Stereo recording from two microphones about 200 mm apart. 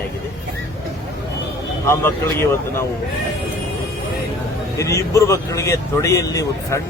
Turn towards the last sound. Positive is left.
turn(degrees=15)  # may be behind; listen again after turning